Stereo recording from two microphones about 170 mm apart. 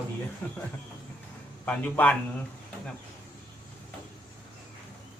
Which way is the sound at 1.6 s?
10° left (ahead or behind).